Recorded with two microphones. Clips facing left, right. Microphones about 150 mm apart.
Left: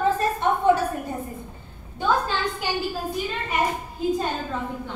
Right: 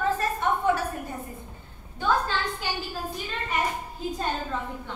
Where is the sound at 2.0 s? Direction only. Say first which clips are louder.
Left 2 dB; 15° left (ahead or behind).